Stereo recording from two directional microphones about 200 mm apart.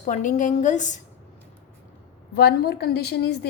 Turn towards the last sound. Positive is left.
turn(degrees=55)  # may be behind; listen again after turning